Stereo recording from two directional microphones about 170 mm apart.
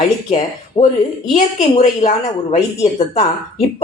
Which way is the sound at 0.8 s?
40° left (ahead or behind).